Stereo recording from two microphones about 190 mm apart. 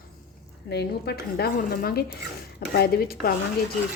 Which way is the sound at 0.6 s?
60° left (ahead or behind).